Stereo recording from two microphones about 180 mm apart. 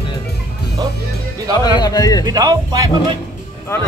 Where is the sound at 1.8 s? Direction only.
20° left (ahead or behind).